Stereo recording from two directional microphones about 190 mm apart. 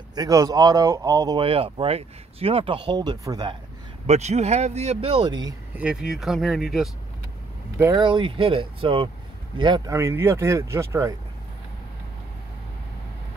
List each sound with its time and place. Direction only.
0.1 s speech: 20° right (ahead or behind)
4.1 s speech: 35° right (ahead or behind)
5.8 s speech: 5° right (ahead or behind)
7.8 s speech: 20° right (ahead or behind)